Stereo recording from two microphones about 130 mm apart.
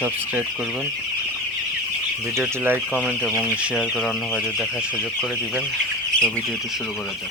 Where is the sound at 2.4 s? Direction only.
15° right (ahead or behind).